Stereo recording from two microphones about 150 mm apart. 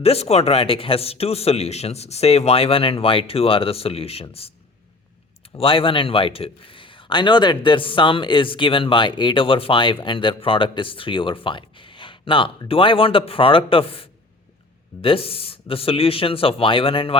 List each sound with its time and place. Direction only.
0.0 s a man's voice: 45° left (ahead or behind)
5.5 s a man's voice: 35° left (ahead or behind)
15.0 s a man's voice: 40° left (ahead or behind)